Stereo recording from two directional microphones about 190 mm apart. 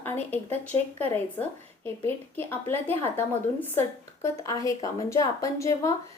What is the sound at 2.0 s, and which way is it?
A woman's voice, 10° left (ahead or behind).